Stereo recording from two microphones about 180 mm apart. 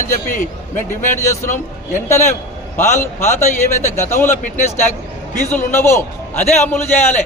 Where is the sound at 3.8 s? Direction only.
15° left (ahead or behind).